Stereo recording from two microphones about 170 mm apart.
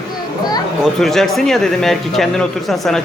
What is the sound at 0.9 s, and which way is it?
Speech, centre (ahead or behind).